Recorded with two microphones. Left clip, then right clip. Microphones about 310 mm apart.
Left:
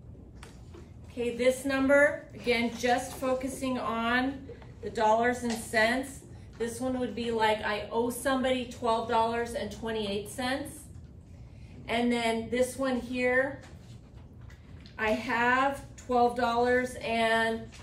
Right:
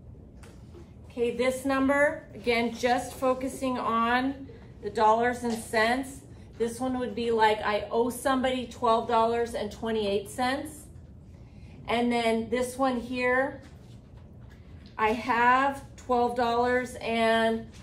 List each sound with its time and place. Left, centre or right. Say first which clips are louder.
1.1 s a woman's voice: even; centre
11.8 s a woman's voice: right 3 dB; centre
15.0 s a woman's voice: right 3 dB; centre